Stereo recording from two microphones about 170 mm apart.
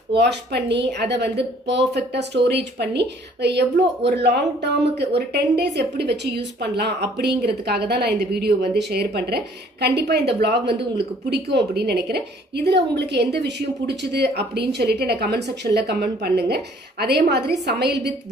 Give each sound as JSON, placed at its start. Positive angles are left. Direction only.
{"t": 0.1, "sound": "a woman's voice", "side_deg": -90}
{"t": 4.2, "sound": "speech", "side_deg": -85}